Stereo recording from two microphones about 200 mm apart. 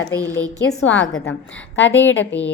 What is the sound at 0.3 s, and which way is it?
Speech, 15° right (ahead or behind).